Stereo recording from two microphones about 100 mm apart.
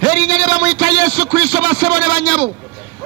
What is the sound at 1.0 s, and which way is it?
A man's voice, 65° right (ahead or behind).